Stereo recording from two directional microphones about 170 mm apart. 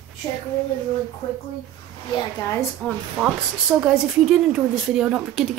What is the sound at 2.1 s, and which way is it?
Speech, 15° left (ahead or behind).